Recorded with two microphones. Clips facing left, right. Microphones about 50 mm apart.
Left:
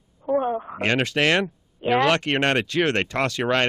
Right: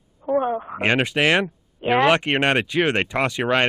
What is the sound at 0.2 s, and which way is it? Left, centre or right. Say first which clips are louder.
Speech: right 1 dB; centre.